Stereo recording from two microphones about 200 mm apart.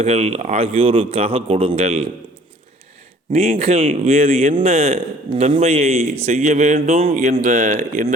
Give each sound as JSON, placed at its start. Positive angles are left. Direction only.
{"t": 0.0, "sound": "a man's voice", "side_deg": -30}
{"t": 3.3, "sound": "speech", "side_deg": -30}